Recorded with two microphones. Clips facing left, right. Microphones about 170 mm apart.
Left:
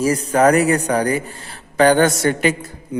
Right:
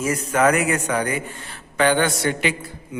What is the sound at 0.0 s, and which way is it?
Mantra, 35° left (ahead or behind).